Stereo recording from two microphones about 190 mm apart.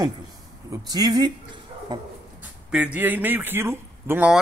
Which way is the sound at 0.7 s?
20° right (ahead or behind).